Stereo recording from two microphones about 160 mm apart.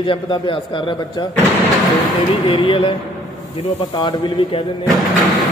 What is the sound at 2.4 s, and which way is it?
Speech, 30° left (ahead or behind).